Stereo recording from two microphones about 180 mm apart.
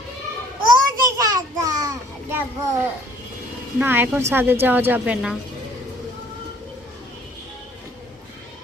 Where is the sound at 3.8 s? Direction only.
10° right (ahead or behind).